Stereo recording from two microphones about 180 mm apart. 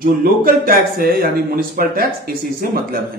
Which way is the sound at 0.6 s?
55° right (ahead or behind).